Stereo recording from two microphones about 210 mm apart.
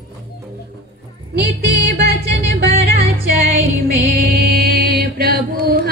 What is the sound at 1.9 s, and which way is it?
Music, 50° right (ahead or behind).